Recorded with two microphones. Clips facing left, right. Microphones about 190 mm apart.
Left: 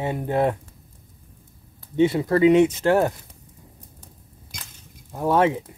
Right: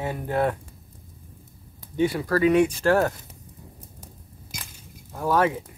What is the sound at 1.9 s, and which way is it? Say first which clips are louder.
Speech: left 4 dB; 25° left (ahead or behind).